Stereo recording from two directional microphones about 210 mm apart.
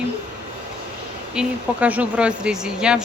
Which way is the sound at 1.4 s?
5° right (ahead or behind).